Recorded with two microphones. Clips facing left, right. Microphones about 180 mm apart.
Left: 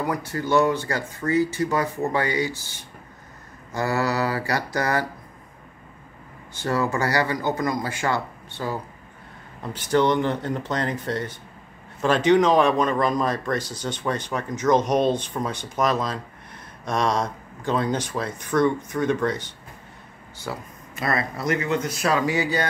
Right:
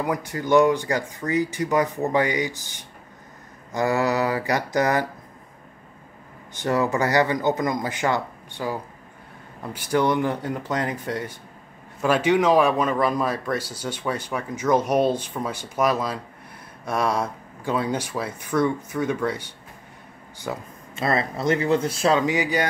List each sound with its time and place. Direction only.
0.0 s speech: 15° right (ahead or behind)
6.5 s speech: 20° right (ahead or behind)
20.3 s speech: 20° right (ahead or behind)